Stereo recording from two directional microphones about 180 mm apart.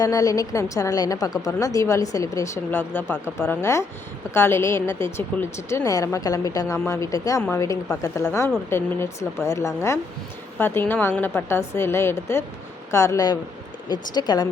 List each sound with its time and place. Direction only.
0.0 s a woman's voice: 20° left (ahead or behind)